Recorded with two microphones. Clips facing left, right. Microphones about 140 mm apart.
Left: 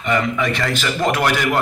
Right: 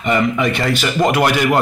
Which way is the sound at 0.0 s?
20° right (ahead or behind).